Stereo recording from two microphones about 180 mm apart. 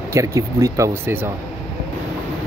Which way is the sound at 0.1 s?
15° right (ahead or behind).